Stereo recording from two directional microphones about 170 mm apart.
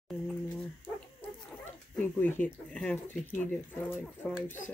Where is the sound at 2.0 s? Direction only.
10° left (ahead or behind).